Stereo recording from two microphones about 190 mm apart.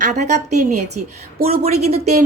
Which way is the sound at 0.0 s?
40° right (ahead or behind).